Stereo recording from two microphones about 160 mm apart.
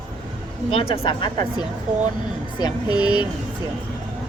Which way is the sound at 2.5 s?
25° left (ahead or behind).